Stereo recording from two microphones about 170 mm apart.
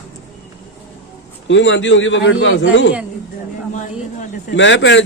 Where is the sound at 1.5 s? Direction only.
90° left.